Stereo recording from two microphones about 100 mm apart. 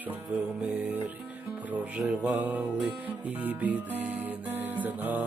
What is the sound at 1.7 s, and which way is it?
Music, 15° right (ahead or behind).